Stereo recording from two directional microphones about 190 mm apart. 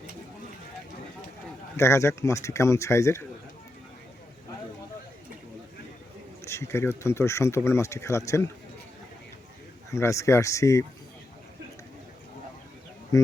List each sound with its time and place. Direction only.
1.7 s speech: 15° left (ahead or behind)
6.4 s speech: 15° left (ahead or behind)
9.9 s speech: 15° left (ahead or behind)